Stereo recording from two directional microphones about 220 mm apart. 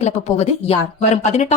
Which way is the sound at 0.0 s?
30° left (ahead or behind).